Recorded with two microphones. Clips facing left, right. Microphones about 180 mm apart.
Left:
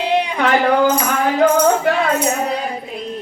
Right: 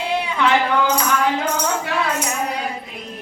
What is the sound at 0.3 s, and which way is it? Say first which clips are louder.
Tambourine: left 2 dB; 50° left (ahead or behind).